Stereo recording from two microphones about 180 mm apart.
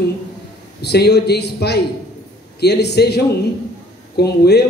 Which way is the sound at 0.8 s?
65° left (ahead or behind).